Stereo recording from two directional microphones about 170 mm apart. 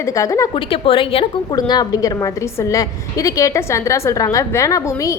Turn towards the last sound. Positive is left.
turn(degrees=20)  # may be behind; listen again after turning